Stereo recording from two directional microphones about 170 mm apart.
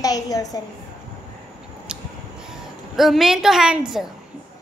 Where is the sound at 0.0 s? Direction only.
20° left (ahead or behind).